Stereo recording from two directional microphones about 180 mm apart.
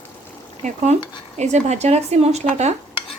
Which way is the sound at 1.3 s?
40° right (ahead or behind).